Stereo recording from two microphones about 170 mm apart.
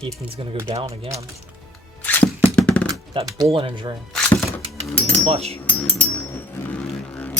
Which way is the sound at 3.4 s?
30° right (ahead or behind).